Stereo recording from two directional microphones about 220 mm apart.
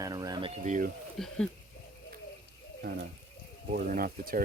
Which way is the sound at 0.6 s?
35° right (ahead or behind).